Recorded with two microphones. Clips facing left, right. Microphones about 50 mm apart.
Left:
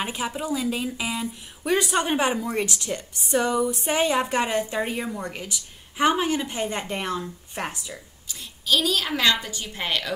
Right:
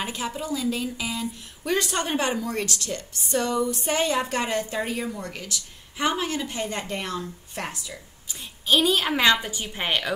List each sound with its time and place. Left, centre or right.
0.0 s a woman's voice: centre
8.3 s a woman's voice: right